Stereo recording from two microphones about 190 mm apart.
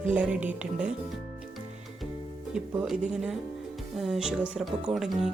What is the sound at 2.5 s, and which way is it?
Speech, 5° right (ahead or behind).